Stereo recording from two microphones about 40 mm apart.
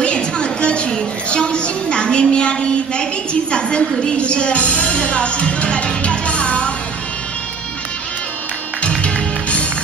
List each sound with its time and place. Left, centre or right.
0.0 s a sound: left
3.5 s a woman's voice: left
8.8 s music: left